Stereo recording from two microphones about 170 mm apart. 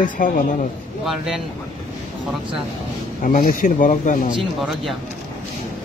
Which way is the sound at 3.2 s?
55° left (ahead or behind).